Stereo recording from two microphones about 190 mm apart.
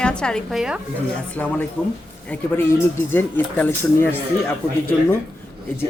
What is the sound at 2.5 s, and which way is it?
A woman's voice, 10° left (ahead or behind).